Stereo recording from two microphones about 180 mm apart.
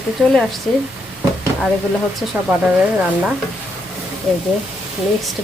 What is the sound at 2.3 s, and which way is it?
Speech, 5° right (ahead or behind).